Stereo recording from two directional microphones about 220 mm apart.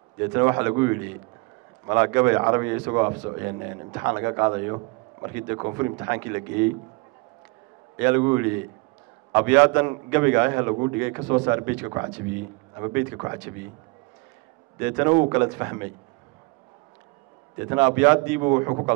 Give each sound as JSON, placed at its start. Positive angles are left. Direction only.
{"t": 0.2, "sound": "a man's voice", "side_deg": -15}
{"t": 8.2, "sound": "a man's voice", "side_deg": -15}
{"t": 14.8, "sound": "a man's voice", "side_deg": -10}
{"t": 17.6, "sound": "a man's voice", "side_deg": -10}